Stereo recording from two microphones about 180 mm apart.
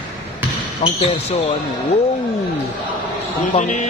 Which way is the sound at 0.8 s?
35° left (ahead or behind).